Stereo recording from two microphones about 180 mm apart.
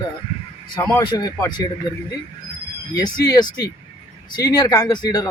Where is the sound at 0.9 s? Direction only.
20° left (ahead or behind).